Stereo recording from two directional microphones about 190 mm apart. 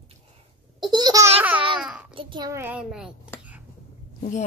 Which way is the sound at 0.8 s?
20° right (ahead or behind).